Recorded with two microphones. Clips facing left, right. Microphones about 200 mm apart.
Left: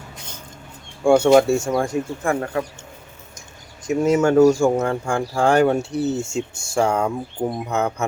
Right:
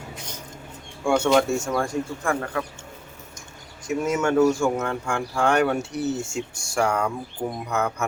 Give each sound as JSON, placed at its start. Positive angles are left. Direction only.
{"t": 1.0, "sound": "speech", "side_deg": 30}
{"t": 4.0, "sound": "speech", "side_deg": 30}